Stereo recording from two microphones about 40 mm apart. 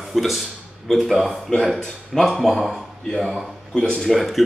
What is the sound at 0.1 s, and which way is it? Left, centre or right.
A man's voice, centre.